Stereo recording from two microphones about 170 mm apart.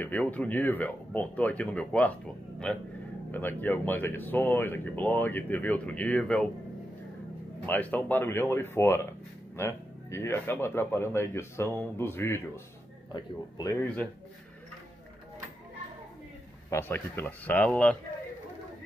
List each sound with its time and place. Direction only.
0.0 s speech: 10° left (ahead or behind)
7.6 s speech: 10° left (ahead or behind)
16.7 s speech: 10° left (ahead or behind)